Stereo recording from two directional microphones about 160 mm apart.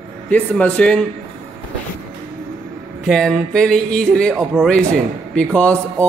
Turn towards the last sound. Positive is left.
turn(degrees=10)  # may be behind; listen again after turning